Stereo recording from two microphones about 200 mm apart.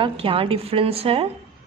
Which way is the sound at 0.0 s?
25° right (ahead or behind).